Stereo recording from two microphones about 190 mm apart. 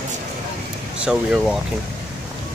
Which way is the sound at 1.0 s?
5° right (ahead or behind).